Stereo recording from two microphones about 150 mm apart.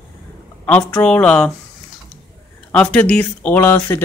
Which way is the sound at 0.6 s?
10° left (ahead or behind).